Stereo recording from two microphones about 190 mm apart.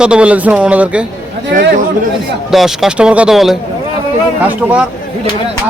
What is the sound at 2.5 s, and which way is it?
A man's voice, centre (ahead or behind).